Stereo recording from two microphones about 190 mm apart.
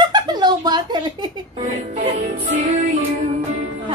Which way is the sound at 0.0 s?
25° right (ahead or behind).